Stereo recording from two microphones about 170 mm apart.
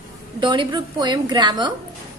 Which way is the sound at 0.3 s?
30° right (ahead or behind).